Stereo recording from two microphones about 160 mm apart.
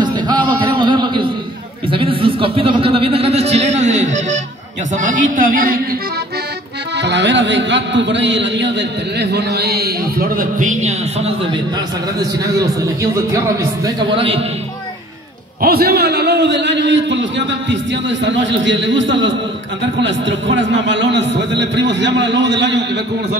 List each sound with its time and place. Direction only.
0.0 s music: 25° right (ahead or behind)
1.9 s speech: 35° right (ahead or behind)
4.9 s music: 50° right (ahead or behind)
7.0 s speech: 90° right; by 11.3 s 45° right (ahead or behind)
12.8 s speech: 20° right (ahead or behind)
13.8 s speech: 30° right (ahead or behind)
15.6 s speech: 75° right (ahead or behind); by 17.7 s 90° right
21.1 s speech: 90° right